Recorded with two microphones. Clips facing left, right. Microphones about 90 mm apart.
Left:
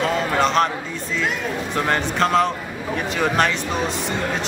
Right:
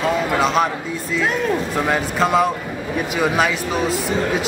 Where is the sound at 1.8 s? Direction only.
5° right (ahead or behind).